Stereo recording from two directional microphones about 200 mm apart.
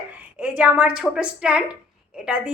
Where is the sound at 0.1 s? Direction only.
5° right (ahead or behind).